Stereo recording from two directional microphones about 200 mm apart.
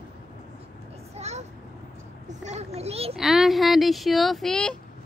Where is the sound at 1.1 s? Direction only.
35° right (ahead or behind).